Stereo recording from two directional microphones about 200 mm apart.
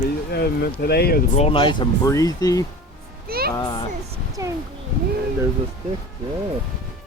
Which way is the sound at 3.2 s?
50° right (ahead or behind).